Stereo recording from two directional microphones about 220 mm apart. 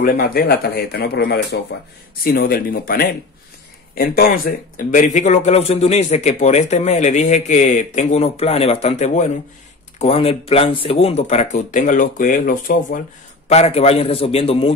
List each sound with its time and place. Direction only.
0.0 s a man's voice: 40° left (ahead or behind)
13.5 s a man's voice: 30° left (ahead or behind)